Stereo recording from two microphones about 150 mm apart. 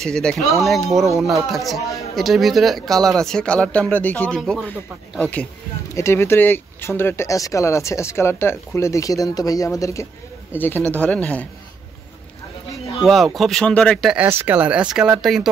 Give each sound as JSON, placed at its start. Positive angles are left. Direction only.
{"t": 0.0, "sound": "speech", "side_deg": 5}
{"t": 4.4, "sound": "speech", "side_deg": 0}
{"t": 5.2, "sound": "speech", "side_deg": 10}
{"t": 13.0, "sound": "speech", "side_deg": 0}
{"t": 14.1, "sound": "speech", "side_deg": -10}